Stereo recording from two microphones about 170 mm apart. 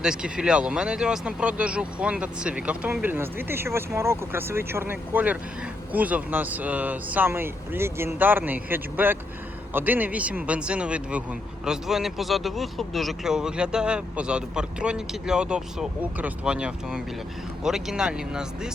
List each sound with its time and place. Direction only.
0.0 s speech: 5° right (ahead or behind)